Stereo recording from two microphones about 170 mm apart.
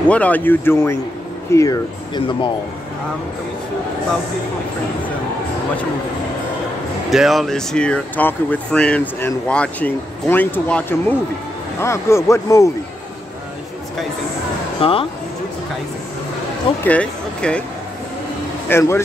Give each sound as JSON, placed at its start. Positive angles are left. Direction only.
{"t": 0.1, "sound": "speech", "side_deg": 10}
{"t": 7.1, "sound": "speech", "side_deg": 0}
{"t": 14.8, "sound": "speech", "side_deg": 35}
{"t": 16.8, "sound": "speech", "side_deg": 5}
{"t": 18.7, "sound": "speech", "side_deg": 15}